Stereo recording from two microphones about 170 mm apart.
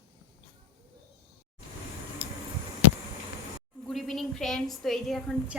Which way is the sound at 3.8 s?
Centre (ahead or behind).